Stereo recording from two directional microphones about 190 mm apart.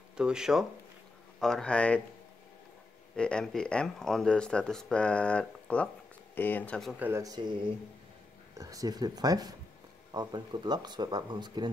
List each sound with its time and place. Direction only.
0.2 s speech: 5° right (ahead or behind)
3.2 s speech: 5° left (ahead or behind)
7.1 s speech: 15° right (ahead or behind)
8.5 s speech: 20° right (ahead or behind)